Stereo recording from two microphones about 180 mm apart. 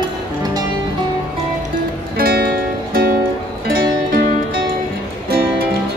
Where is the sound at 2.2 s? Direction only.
55° right (ahead or behind).